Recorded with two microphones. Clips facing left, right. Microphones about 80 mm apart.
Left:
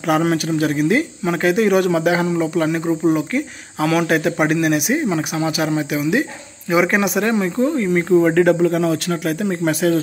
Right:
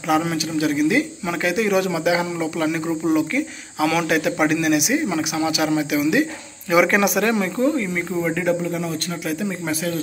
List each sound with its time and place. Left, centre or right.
0.1 s speech: left
7.7 s speech: left
8.2 s speech: left
8.5 s speech: left
9.4 s speech: left